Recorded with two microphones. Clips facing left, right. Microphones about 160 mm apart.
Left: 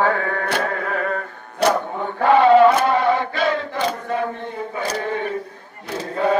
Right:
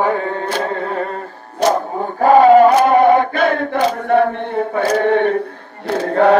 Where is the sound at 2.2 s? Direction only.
40° right (ahead or behind).